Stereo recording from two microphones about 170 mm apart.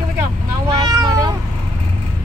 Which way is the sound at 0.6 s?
25° right (ahead or behind).